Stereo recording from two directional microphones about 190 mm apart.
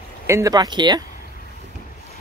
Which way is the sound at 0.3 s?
20° right (ahead or behind).